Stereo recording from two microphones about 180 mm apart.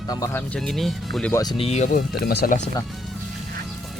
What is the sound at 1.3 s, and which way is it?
Speech, 20° left (ahead or behind).